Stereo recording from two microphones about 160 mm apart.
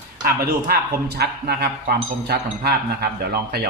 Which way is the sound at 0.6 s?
75° right (ahead or behind).